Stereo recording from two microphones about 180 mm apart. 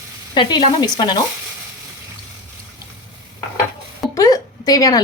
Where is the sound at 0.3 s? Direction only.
25° left (ahead or behind).